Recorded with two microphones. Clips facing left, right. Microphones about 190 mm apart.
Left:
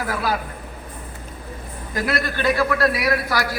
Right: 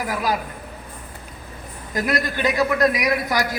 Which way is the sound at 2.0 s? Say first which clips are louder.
Right 1 dB; 15° right (ahead or behind).